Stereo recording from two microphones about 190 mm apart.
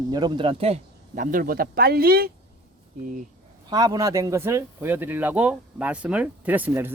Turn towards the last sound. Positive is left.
turn(degrees=-10)  # may be behind; listen again after turning